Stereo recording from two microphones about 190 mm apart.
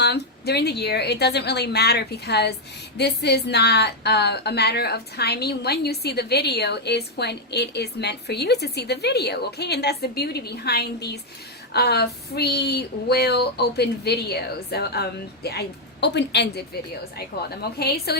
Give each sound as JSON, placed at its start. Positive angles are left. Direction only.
{"t": 0.0, "sound": "a woman's voice", "side_deg": 60}